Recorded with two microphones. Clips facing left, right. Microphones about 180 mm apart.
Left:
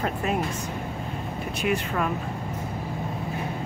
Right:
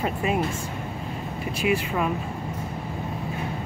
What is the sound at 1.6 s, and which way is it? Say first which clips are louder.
Speech: right 2 dB; 5° right (ahead or behind).